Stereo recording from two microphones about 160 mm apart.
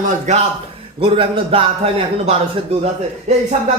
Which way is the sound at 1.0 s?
35° right (ahead or behind).